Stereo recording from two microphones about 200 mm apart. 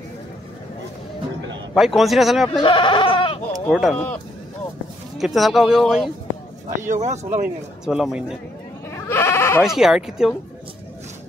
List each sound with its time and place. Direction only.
1.7 s speech: centre (ahead or behind)
2.6 s sheep: 25° left (ahead or behind)
3.6 s speech: 5° left (ahead or behind)
6.9 s speech: 35° right (ahead or behind)
7.8 s speech: 5° right (ahead or behind)
8.9 s goat: 15° left (ahead or behind)
9.6 s speech: centre (ahead or behind)